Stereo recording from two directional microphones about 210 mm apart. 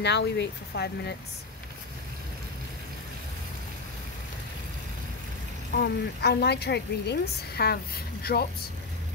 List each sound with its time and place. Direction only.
0.0 s speech: 55° left (ahead or behind)
5.8 s a woman's voice: 50° left (ahead or behind)